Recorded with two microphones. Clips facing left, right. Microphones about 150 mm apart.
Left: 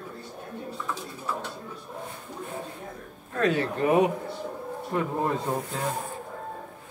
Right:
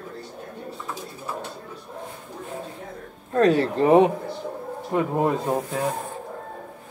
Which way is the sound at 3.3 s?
35° right (ahead or behind).